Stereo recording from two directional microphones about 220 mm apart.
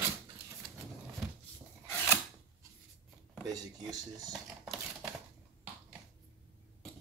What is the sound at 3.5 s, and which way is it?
Speech, 15° right (ahead or behind).